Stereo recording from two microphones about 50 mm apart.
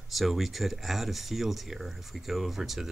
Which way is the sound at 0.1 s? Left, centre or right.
Centre.